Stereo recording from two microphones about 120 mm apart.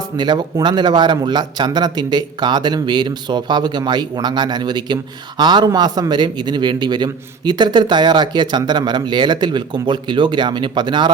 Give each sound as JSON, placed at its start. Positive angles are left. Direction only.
{"t": 0.2, "sound": "a man's voice", "side_deg": -35}